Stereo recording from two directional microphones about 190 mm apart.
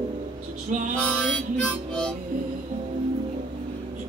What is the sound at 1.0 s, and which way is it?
Harmonica, 5° left (ahead or behind).